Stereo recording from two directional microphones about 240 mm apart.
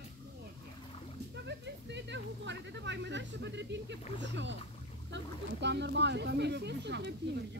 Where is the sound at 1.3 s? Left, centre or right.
Right.